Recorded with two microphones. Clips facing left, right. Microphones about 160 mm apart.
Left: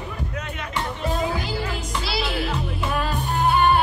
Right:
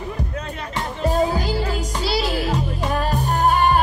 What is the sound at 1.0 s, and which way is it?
Music, 35° right (ahead or behind).